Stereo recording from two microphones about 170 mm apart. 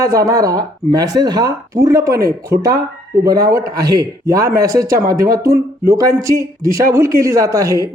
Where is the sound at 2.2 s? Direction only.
65° right (ahead or behind).